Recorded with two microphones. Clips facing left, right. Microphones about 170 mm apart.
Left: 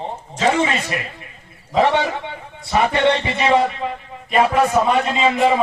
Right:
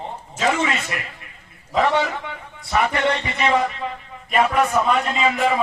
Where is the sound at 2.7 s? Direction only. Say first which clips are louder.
Left 4 dB; 25° left (ahead or behind).